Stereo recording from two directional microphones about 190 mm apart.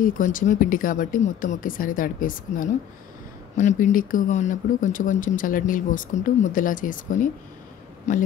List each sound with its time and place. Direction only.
0.0 s a man's voice: 45° left (ahead or behind)